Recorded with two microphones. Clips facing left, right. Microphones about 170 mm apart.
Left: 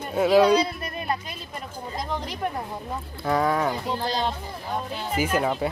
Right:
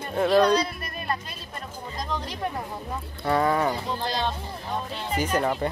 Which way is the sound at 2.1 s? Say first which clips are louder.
Left 1 dB; 10° left (ahead or behind).